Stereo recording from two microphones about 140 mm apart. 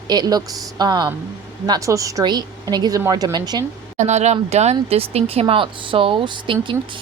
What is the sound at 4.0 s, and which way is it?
A woman's voice, 55° right (ahead or behind).